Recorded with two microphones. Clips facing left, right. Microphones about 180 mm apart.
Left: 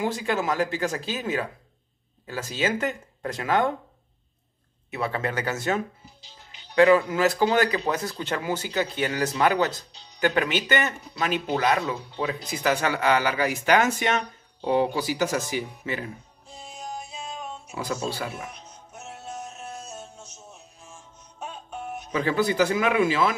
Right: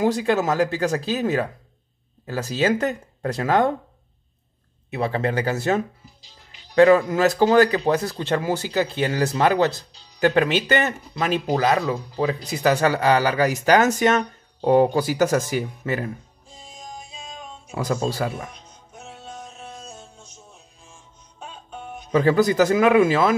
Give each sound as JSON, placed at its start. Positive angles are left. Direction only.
{"t": 0.0, "sound": "speech", "side_deg": -35}
{"t": 4.9, "sound": "speech", "side_deg": -30}
{"t": 17.6, "sound": "speech", "side_deg": -45}
{"t": 22.1, "sound": "speech", "side_deg": -40}